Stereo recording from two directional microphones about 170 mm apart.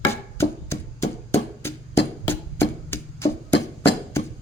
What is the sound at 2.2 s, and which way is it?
Music, 15° left (ahead or behind).